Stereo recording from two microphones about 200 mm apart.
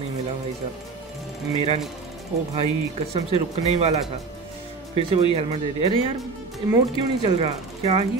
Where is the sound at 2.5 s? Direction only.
30° right (ahead or behind).